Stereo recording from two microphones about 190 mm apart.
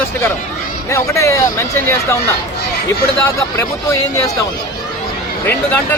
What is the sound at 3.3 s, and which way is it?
Speech, 15° left (ahead or behind).